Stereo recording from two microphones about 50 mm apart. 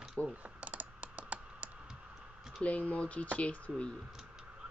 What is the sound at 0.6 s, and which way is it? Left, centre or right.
Computer keyboard, right.